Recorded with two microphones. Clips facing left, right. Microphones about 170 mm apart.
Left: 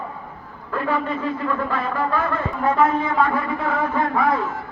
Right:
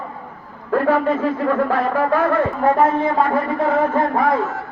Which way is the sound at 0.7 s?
50° right (ahead or behind).